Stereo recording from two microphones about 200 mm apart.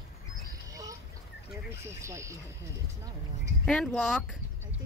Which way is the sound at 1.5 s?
10° right (ahead or behind).